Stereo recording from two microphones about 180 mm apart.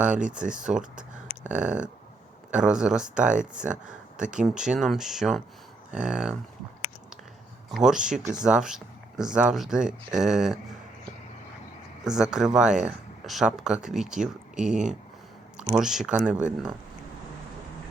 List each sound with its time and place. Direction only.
0.5 s speech: 5° right (ahead or behind)
4.2 s speech: 45° right (ahead or behind)
4.4 s speech: 5° right (ahead or behind)
7.7 s speech: centre (ahead or behind)